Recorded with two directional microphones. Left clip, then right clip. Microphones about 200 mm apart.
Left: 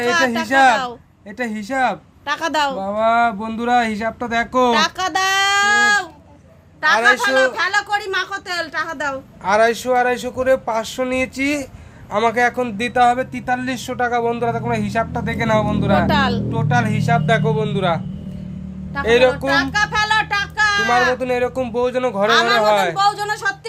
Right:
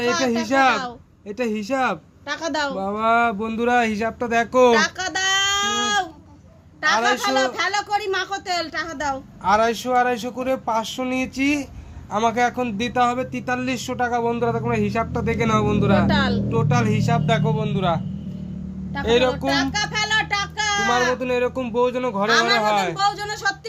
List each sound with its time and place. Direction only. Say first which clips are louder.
0.4 s speech: left 4 dB; centre (ahead or behind)
2.2 s a woman's voice: left 6 dB; 45° left (ahead or behind)
2.7 s speech: left 3 dB; 5° right (ahead or behind)
4.7 s baby cry: left 2 dB; 15° left (ahead or behind)
6.8 s a woman's voice: left 5 dB; 10° left (ahead or behind)
16.0 s speech: left 4 dB; 25° left (ahead or behind)
16.5 s speech: left 2 dB; 5° right (ahead or behind)